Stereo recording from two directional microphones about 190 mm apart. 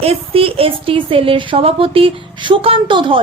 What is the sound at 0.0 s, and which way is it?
Speech, 30° right (ahead or behind).